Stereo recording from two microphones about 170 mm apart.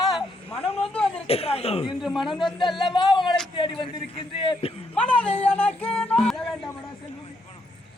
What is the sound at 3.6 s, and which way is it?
A man's voice, 30° left (ahead or behind).